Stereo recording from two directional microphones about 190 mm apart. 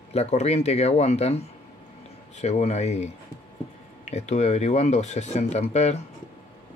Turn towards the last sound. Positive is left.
turn(degrees=35)  # may be behind; listen again after turning